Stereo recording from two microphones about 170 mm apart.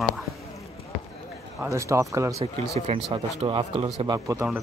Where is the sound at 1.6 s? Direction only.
15° right (ahead or behind).